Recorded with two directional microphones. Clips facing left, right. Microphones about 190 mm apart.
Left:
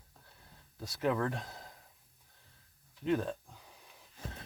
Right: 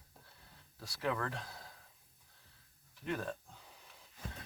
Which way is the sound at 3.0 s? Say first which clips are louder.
Left 7 dB; 20° left (ahead or behind).